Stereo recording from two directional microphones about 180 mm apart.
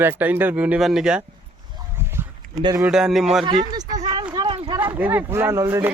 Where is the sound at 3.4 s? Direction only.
25° right (ahead or behind).